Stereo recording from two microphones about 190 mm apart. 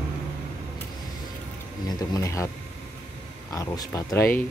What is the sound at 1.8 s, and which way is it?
Speech, 20° left (ahead or behind).